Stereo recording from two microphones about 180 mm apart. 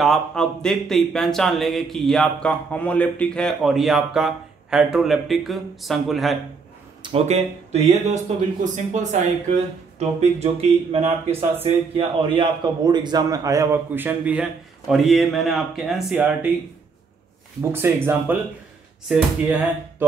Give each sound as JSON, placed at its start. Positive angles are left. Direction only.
{"t": 0.0, "sound": "speech", "side_deg": 0}
{"t": 7.0, "sound": "a man's voice", "side_deg": -30}
{"t": 17.6, "sound": "a man's voice", "side_deg": -15}